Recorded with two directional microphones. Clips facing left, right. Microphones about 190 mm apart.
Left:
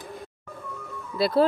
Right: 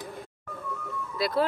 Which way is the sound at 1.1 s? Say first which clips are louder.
Left 5 dB; 30° left (ahead or behind).